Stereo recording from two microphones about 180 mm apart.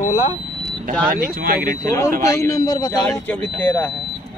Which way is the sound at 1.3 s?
55° right (ahead or behind).